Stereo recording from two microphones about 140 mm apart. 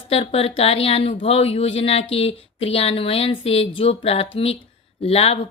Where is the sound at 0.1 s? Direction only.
45° left (ahead or behind).